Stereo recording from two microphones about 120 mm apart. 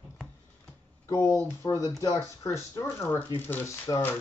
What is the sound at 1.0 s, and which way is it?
Speech, 20° left (ahead or behind).